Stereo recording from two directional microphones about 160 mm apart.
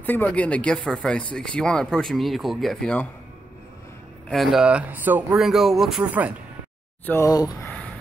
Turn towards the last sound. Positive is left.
turn(degrees=20)  # may be behind; listen again after turning